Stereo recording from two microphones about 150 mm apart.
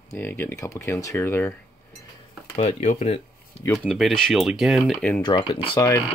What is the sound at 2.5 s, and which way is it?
Speech, 45° left (ahead or behind).